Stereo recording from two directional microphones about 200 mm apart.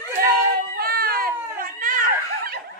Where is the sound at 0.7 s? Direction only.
50° right (ahead or behind).